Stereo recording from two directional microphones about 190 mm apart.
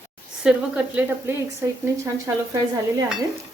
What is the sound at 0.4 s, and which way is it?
Speech, 5° right (ahead or behind).